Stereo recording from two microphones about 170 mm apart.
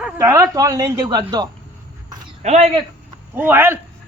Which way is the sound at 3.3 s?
10° right (ahead or behind).